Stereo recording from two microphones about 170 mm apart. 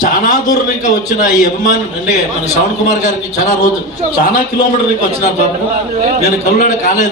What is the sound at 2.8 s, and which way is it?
Speech, 45° left (ahead or behind).